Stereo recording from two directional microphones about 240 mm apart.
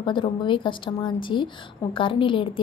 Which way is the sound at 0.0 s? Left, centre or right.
Centre.